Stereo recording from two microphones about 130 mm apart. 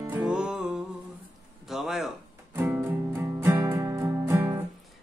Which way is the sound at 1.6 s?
5° right (ahead or behind).